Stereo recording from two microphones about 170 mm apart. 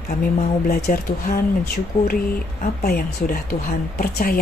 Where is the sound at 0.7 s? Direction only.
60° left (ahead or behind).